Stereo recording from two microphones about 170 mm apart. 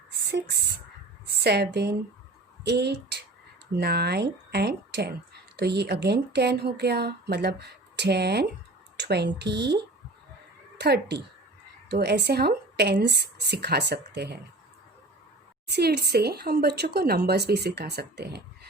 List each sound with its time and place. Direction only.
0.3 s speech: 75° right (ahead or behind)
10.8 s speech: 80° right
15.6 s speech: 70° right (ahead or behind)